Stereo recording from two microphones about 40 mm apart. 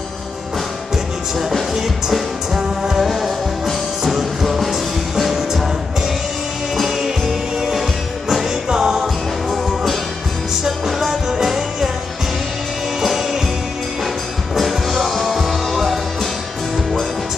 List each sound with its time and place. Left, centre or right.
1.4 s music: centre
2.6 s music: centre
3.0 s music: centre
6.8 s music: centre
9.5 s music: centre
13.0 s music: centre
14.5 s music: centre